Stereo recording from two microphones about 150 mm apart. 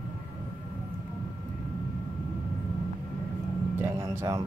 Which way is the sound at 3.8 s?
20° right (ahead or behind).